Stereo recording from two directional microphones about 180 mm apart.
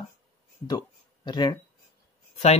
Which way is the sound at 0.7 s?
25° left (ahead or behind).